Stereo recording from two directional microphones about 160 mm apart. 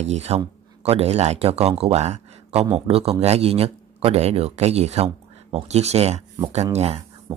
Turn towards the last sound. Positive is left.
turn(degrees=-40)  # may be behind; listen again after turning